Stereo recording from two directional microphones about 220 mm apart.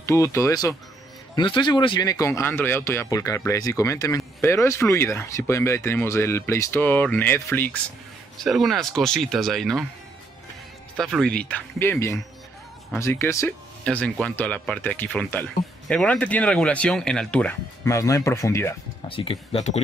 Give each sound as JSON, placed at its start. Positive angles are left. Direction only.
{"t": 0.0, "sound": "speech", "side_deg": 10}
{"t": 11.0, "sound": "speech", "side_deg": 5}
{"t": 19.0, "sound": "speech", "side_deg": 25}